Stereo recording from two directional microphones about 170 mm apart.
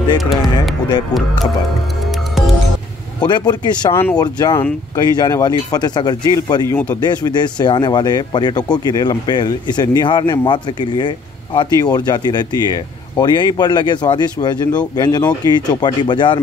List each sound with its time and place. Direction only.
0.2 s speech: centre (ahead or behind)
3.2 s speech: 25° left (ahead or behind)
6.7 s speech: 10° left (ahead or behind)
7.0 s speech: 25° left (ahead or behind)